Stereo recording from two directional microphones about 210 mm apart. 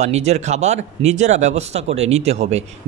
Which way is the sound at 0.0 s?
30° right (ahead or behind).